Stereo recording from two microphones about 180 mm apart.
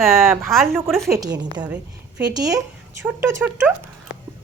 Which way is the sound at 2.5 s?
15° right (ahead or behind).